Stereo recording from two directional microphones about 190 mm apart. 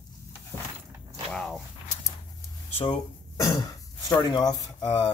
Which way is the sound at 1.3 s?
5° left (ahead or behind).